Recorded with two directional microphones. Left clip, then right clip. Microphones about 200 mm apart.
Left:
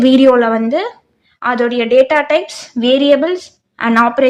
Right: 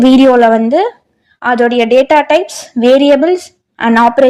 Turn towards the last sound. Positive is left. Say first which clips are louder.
# right 4 dB
turn(degrees=-10)  # may be behind; listen again after turning